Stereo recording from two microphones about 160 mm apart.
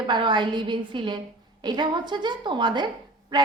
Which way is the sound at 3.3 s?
30° right (ahead or behind).